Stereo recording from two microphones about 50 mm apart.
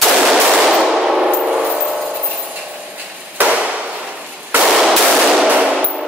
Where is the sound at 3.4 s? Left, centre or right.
Right.